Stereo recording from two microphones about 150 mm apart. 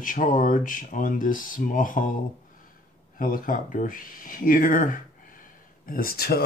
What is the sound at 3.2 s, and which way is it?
Speech, 60° left (ahead or behind).